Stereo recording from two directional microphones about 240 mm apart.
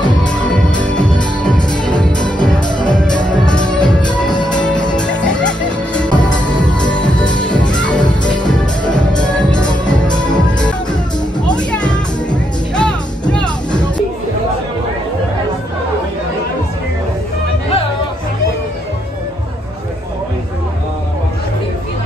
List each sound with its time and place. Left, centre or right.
0.0 s music: centre
0.3 s music: centre
2.7 s music: centre
3.3 s music: centre
3.8 s music: centre
4.6 s music: centre
6.1 s music: centre
8.0 s music: centre
9.3 s music: centre
10.0 s music: centre
11.7 s music: centre
13.3 s music: centre